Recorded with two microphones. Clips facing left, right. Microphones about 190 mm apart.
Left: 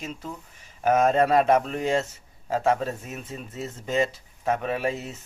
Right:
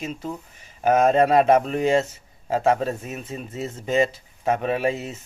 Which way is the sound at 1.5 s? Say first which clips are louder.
Right 4 dB; 20° right (ahead or behind).